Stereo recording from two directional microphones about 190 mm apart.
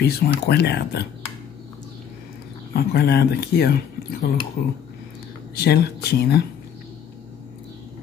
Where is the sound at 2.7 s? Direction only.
60° left (ahead or behind).